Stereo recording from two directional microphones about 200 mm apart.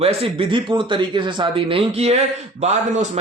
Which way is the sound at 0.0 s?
30° right (ahead or behind).